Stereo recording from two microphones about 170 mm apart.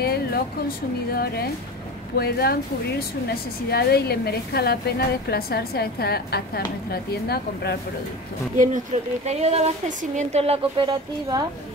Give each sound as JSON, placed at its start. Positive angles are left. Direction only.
{"t": 0.0, "sound": "a woman's voice", "side_deg": 65}
{"t": 8.5, "sound": "a woman's voice", "side_deg": -45}